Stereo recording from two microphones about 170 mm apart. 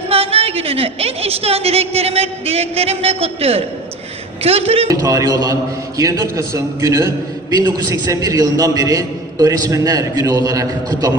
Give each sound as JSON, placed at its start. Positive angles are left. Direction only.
{"t": 0.1, "sound": "a woman's voice", "side_deg": -35}
{"t": 4.8, "sound": "a man's voice", "side_deg": -20}